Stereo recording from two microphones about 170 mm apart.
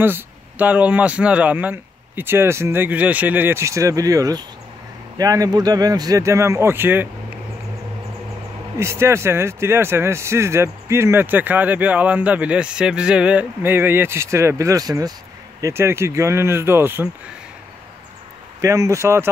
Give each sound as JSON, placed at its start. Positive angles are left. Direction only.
{"t": 0.0, "sound": "speech", "side_deg": -10}
{"t": 8.7, "sound": "speech", "side_deg": -15}
{"t": 18.6, "sound": "speech", "side_deg": -20}